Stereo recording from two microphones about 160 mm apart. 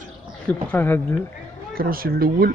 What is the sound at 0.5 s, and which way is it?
Speech, 10° left (ahead or behind).